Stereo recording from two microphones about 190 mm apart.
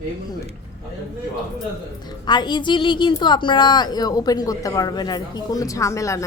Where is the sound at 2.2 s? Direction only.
25° left (ahead or behind).